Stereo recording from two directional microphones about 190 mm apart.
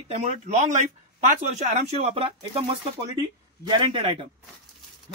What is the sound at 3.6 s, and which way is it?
Speech, 25° right (ahead or behind).